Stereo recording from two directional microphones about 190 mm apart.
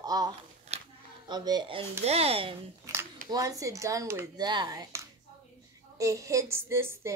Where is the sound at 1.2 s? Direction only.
20° right (ahead or behind).